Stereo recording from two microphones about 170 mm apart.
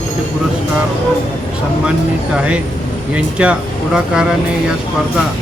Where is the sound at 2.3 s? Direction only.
5° right (ahead or behind).